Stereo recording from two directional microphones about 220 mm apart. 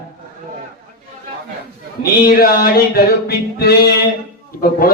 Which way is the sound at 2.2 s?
40° left (ahead or behind).